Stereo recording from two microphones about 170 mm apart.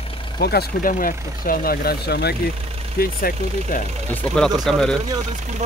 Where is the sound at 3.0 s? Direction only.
60° left (ahead or behind).